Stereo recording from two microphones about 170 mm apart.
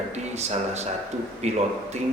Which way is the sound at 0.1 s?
40° right (ahead or behind).